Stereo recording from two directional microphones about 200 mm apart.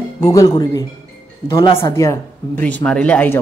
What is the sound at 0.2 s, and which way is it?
Speech, 15° left (ahead or behind).